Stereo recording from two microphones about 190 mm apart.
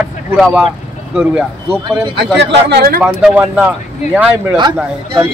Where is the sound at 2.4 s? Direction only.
65° right (ahead or behind).